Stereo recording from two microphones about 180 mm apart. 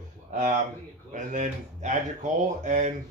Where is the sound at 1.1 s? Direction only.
45° right (ahead or behind).